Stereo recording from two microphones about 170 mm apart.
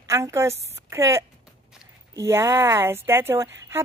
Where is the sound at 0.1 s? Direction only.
15° right (ahead or behind).